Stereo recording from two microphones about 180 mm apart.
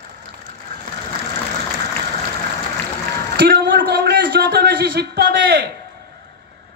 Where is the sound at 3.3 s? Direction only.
65° right (ahead or behind).